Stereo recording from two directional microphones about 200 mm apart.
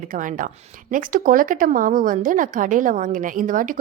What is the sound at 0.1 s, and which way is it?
Speech, 40° right (ahead or behind).